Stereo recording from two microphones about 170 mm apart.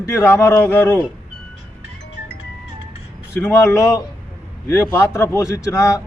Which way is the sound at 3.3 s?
15° left (ahead or behind).